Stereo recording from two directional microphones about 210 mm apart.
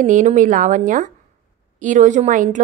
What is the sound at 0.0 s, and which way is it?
Speech, 35° right (ahead or behind).